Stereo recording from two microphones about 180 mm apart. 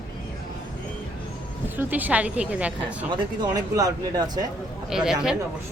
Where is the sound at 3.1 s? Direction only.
20° right (ahead or behind).